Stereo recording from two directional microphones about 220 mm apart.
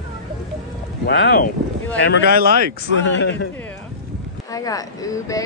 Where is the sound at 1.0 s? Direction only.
50° left (ahead or behind).